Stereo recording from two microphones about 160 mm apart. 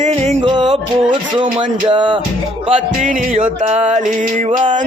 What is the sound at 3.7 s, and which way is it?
Music, 45° right (ahead or behind).